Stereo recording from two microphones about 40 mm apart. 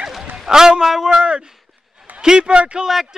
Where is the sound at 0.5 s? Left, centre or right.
Centre.